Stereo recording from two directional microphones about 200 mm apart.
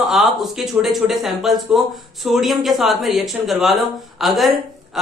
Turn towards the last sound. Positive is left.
turn(degrees=0)  # may be behind; listen again after turning